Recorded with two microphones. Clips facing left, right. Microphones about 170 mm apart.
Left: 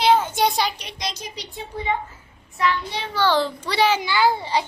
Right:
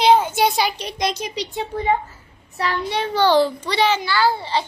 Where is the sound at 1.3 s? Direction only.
90° right.